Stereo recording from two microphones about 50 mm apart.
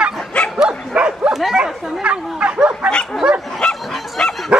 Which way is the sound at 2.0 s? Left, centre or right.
Right.